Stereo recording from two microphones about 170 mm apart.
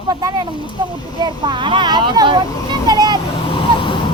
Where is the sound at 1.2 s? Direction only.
25° right (ahead or behind).